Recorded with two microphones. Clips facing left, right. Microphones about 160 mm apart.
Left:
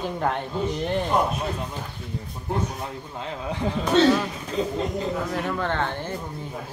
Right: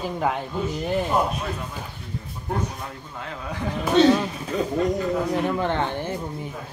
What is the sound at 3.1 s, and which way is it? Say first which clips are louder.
Speech: left 2 dB; 20° left (ahead or behind).